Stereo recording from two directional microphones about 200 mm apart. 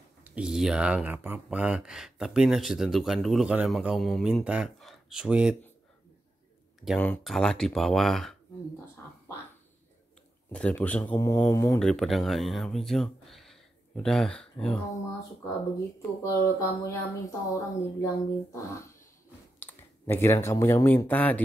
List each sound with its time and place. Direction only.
0.2 s speech: 5° right (ahead or behind)
6.8 s speech: 5° left (ahead or behind)
10.5 s speech: 5° left (ahead or behind)
11.8 s speech: centre (ahead or behind)
16.2 s speech: 15° left (ahead or behind)